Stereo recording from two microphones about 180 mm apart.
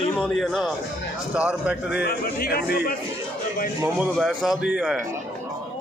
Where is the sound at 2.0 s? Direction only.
60° left (ahead or behind).